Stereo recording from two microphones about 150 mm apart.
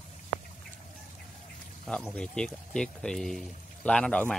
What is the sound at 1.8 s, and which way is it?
Speech, 10° left (ahead or behind).